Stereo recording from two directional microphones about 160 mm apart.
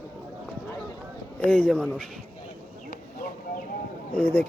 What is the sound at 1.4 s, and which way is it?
Speech, 10° left (ahead or behind).